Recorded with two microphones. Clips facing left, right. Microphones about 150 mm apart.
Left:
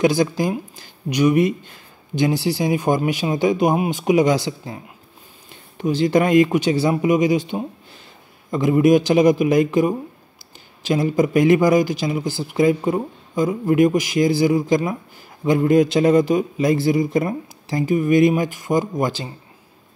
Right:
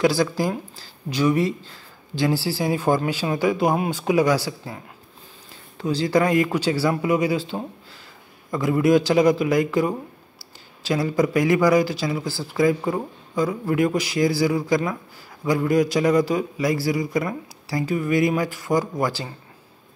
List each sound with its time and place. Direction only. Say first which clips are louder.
0.0 s speech: left 2 dB; 20° left (ahead or behind)